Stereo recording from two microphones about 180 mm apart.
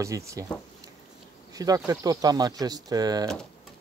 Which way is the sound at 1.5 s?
20° right (ahead or behind).